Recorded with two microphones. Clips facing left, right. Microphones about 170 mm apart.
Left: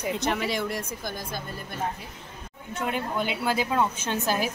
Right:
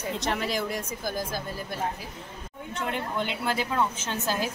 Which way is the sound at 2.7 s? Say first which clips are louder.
Left 2 dB; 10° left (ahead or behind).